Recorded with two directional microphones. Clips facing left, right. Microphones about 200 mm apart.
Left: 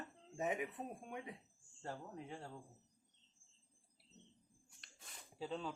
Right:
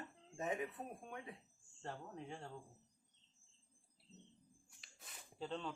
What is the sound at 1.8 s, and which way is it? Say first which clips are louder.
Speech: left 1 dB; 5° left (ahead or behind).